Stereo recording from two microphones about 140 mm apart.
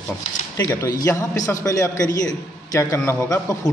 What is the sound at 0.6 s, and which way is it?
A man's voice, 20° left (ahead or behind).